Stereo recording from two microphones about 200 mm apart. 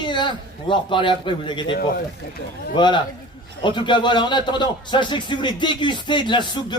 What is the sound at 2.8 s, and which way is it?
A man's voice, 25° left (ahead or behind).